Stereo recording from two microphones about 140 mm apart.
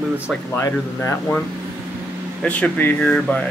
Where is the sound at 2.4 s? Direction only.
10° left (ahead or behind).